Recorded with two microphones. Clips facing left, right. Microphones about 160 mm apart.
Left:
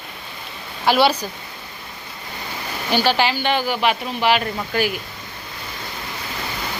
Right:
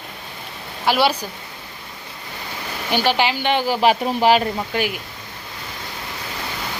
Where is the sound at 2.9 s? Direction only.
15° right (ahead or behind); by 4.4 s 40° right (ahead or behind).